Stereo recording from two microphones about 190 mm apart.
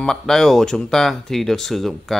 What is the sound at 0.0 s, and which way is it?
Speech, centre (ahead or behind).